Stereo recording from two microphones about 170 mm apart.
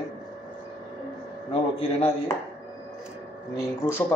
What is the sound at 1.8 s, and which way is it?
Speech, 35° left (ahead or behind).